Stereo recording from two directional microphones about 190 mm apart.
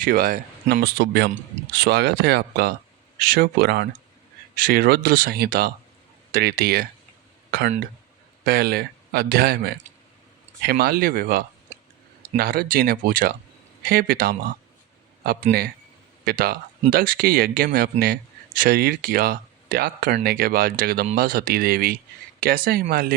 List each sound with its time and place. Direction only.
0.0 s speech: 50° right (ahead or behind)
8.4 s speech: 55° right (ahead or behind)
16.2 s speech: 55° right (ahead or behind)